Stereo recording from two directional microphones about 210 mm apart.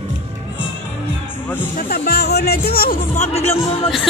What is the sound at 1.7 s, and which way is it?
Speech, 45° left (ahead or behind).